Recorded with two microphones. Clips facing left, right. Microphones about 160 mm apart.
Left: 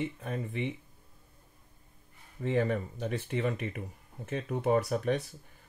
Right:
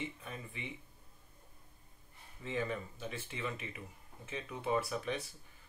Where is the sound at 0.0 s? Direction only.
50° left (ahead or behind).